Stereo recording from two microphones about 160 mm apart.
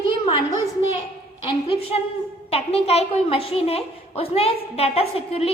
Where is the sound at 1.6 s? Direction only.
35° left (ahead or behind).